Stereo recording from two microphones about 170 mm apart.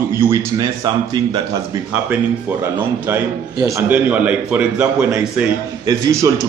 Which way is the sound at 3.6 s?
15° right (ahead or behind).